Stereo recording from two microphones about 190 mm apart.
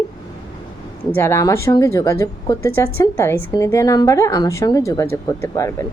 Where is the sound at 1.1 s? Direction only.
15° left (ahead or behind).